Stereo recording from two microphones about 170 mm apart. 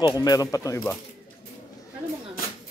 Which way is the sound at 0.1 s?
20° left (ahead or behind).